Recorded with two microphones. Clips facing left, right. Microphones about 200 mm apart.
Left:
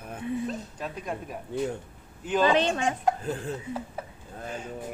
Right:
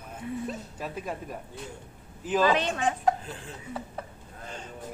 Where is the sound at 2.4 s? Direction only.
25° left (ahead or behind).